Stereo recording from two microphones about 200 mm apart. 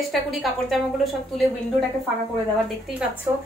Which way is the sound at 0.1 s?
Centre (ahead or behind).